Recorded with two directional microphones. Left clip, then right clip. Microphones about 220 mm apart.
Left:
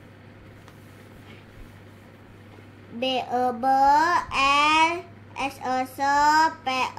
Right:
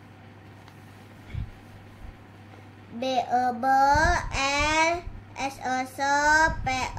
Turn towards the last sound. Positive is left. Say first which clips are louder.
# left 3 dB
turn(degrees=-15)  # may be behind; listen again after turning